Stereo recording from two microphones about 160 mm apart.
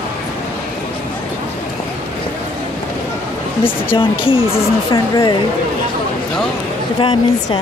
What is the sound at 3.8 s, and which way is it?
Speech, 35° left (ahead or behind).